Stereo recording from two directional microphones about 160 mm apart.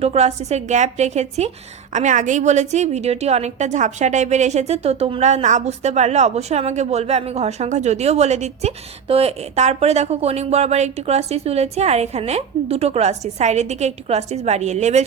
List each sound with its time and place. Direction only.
0.0 s a woman's voice: 40° right (ahead or behind)